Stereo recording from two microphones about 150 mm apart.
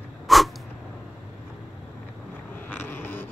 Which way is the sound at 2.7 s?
15° left (ahead or behind).